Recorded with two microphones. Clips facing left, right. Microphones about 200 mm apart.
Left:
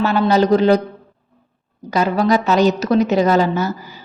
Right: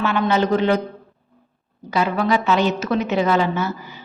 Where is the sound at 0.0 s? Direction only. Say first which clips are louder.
Left 4 dB; 40° left (ahead or behind).